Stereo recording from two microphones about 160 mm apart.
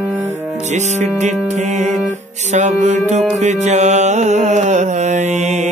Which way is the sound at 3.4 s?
45° right (ahead or behind).